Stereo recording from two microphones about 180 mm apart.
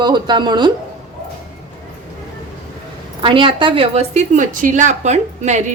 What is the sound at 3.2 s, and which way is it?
A woman's voice, 30° right (ahead or behind).